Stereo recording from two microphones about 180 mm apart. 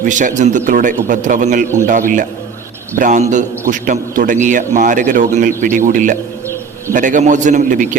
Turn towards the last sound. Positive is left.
turn(degrees=-45)  # may be behind; listen again after turning